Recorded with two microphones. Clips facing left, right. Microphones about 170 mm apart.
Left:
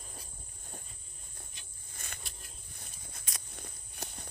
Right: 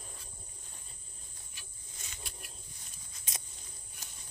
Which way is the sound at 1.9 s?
55° left (ahead or behind).